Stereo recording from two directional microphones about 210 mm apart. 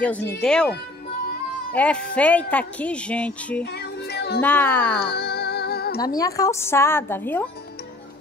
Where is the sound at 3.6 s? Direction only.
50° left (ahead or behind).